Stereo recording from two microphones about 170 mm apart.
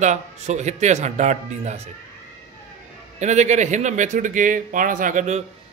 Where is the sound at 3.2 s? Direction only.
45° right (ahead or behind).